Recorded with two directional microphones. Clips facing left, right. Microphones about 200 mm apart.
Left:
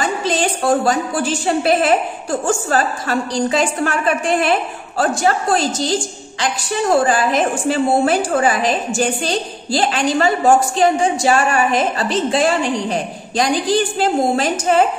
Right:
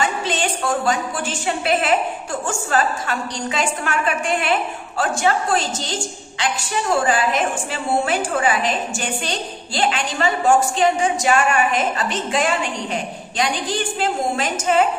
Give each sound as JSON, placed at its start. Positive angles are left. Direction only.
{"t": 0.0, "sound": "a woman's voice", "side_deg": 40}